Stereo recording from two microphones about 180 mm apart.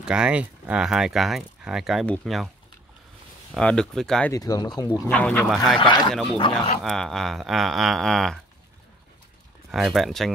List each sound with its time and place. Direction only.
0.0 s speech: 5° right (ahead or behind)
3.5 s speech: 5° left (ahead or behind)
4.3 s speech: 20° left (ahead or behind)
5.1 s speech: 10° left (ahead or behind)
5.8 s speech: 25° left (ahead or behind)
6.8 s speech: centre (ahead or behind)
9.7 s speech: centre (ahead or behind)